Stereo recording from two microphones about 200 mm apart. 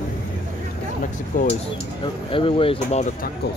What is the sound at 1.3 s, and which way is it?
Speech, 45° left (ahead or behind).